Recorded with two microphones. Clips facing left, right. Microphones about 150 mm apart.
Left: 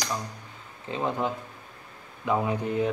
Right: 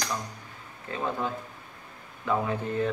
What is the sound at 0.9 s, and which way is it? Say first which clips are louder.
Speech: left 2 dB; 20° left (ahead or behind).